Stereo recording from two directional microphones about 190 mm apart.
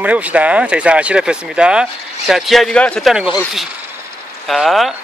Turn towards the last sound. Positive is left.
turn(degrees=0)  # may be behind; listen again after turning